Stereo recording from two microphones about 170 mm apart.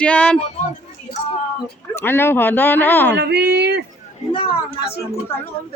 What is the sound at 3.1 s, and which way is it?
Speech, 75° right (ahead or behind).